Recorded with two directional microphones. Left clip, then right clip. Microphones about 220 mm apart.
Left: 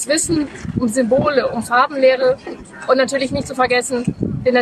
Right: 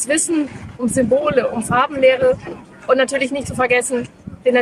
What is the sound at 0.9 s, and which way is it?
Speech, 10° right (ahead or behind).